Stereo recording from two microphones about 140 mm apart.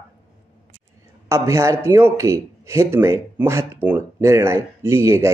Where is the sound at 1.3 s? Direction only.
20° right (ahead or behind).